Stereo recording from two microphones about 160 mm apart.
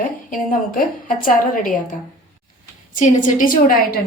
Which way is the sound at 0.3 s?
60° left (ahead or behind).